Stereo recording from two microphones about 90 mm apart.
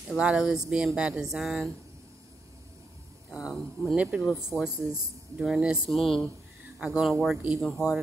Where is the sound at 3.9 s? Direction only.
15° right (ahead or behind); by 6.2 s centre (ahead or behind).